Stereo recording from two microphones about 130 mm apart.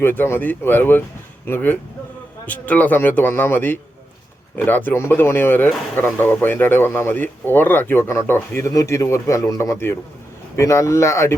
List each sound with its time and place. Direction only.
0.0 s speech: 15° left (ahead or behind)